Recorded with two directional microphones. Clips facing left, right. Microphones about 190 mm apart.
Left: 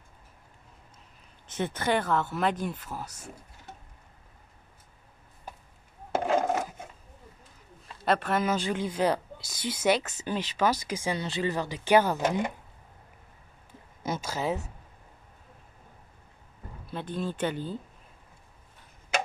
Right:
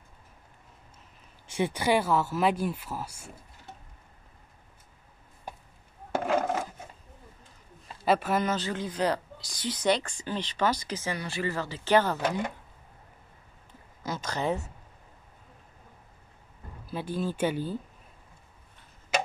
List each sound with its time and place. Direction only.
1.5 s speech: 10° right (ahead or behind)
6.3 s a sound: 5° left (ahead or behind)
8.0 s speech: 5° right (ahead or behind)
8.5 s speech: 15° left (ahead or behind)
14.2 s speech: 5° left (ahead or behind)
16.8 s speech: 5° right (ahead or behind)